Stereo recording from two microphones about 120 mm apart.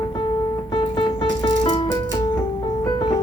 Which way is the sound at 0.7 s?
40° left (ahead or behind).